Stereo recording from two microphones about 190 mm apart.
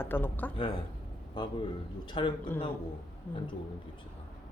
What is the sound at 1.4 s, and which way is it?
Speech, 25° left (ahead or behind).